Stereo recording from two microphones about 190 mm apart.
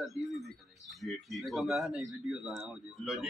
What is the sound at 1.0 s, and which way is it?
A man's voice, centre (ahead or behind).